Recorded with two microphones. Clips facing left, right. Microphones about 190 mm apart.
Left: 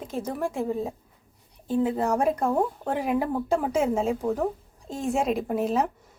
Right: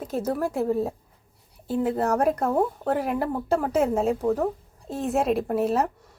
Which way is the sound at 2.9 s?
Centre (ahead or behind).